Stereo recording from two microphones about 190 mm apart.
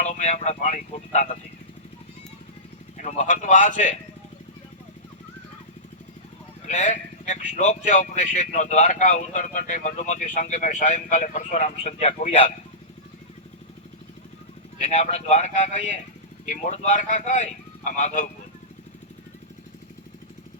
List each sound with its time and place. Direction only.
0.0 s speech: 40° left (ahead or behind)
3.0 s speech: 40° left (ahead or behind)
6.7 s speech: 40° left (ahead or behind)
14.8 s speech: 35° left (ahead or behind)